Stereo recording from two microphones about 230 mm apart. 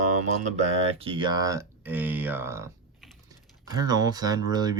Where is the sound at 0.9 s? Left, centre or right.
Right.